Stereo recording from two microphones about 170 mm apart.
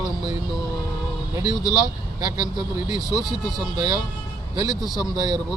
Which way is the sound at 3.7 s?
25° right (ahead or behind).